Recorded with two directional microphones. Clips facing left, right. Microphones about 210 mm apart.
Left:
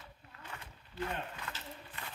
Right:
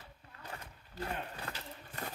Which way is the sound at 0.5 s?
35° right (ahead or behind).